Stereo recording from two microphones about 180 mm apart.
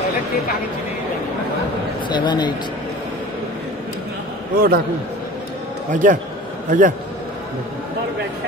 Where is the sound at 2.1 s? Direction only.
25° left (ahead or behind).